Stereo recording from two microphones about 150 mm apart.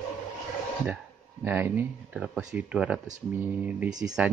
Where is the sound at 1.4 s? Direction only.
15° right (ahead or behind).